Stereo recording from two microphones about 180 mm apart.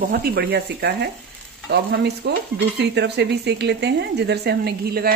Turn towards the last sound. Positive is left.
turn(degrees=-60)  # may be behind; listen again after turning